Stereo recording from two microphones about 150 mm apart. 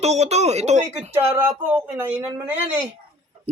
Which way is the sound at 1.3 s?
15° right (ahead or behind).